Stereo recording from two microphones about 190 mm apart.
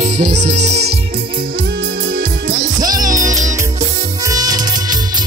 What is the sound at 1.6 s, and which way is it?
Music, 70° right (ahead or behind).